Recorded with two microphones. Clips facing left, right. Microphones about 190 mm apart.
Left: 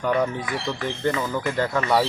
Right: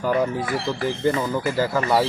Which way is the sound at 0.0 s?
5° right (ahead or behind).